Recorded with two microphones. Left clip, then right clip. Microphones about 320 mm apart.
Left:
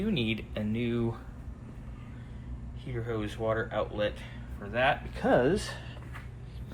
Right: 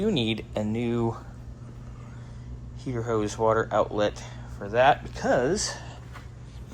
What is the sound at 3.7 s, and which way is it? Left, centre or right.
Speech, centre.